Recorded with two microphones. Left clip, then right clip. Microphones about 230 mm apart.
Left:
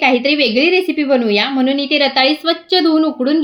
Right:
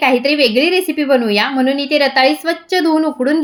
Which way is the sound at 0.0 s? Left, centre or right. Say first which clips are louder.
Right 1 dB; centre.